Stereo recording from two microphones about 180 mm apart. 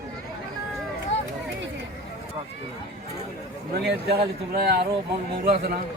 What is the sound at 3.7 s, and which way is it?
A man's voice, 65° right (ahead or behind).